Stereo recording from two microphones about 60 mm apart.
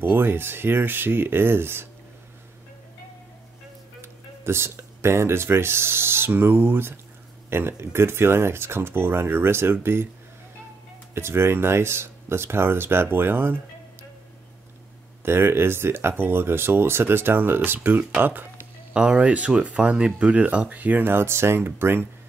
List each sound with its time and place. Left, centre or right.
0.0 s speech: right
4.0 s speech: right
11.1 s speech: right
15.2 s speech: right
18.9 s speech: centre; by 22.0 s right